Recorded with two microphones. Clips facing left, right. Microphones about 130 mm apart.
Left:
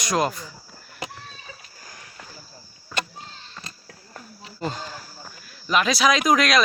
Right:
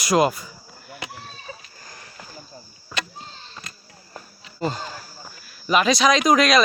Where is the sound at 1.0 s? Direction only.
40° left (ahead or behind).